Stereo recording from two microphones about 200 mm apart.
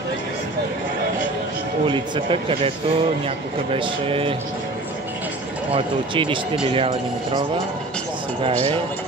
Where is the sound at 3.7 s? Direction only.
25° right (ahead or behind).